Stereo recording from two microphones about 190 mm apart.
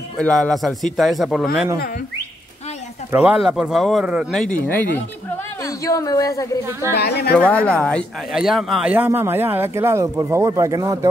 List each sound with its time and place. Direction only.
0.2 s speech: 5° left (ahead or behind)
3.1 s a woman's voice: 5° right (ahead or behind); by 6.6 s 20° left (ahead or behind)
7.0 s speech: 60° left (ahead or behind)
7.6 s speech: 5° left (ahead or behind); by 11.1 s 15° right (ahead or behind)